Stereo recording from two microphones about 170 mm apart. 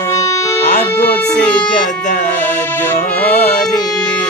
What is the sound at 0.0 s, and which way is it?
Music, 20° left (ahead or behind).